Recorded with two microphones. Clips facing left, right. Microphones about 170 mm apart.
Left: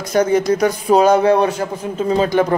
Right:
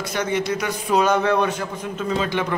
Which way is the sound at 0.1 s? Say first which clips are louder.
Left 10 dB; 40° left (ahead or behind).